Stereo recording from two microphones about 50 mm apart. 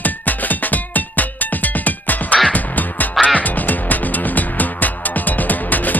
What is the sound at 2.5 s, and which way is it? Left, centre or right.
Quack, left.